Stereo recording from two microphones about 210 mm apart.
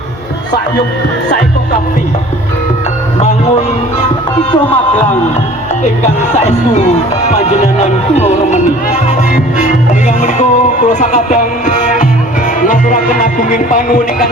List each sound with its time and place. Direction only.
7.3 s music: 35° left (ahead or behind)